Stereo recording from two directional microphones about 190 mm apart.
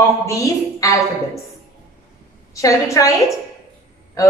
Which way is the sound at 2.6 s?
15° left (ahead or behind).